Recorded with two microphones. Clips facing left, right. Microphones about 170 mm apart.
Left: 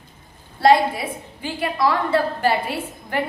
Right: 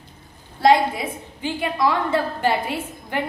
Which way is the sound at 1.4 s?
20° right (ahead or behind).